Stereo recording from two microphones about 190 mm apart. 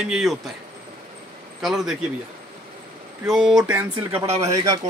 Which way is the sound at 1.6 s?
Centre (ahead or behind).